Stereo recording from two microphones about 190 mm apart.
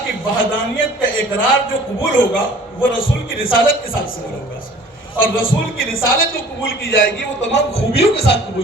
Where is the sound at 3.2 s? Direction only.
50° left (ahead or behind).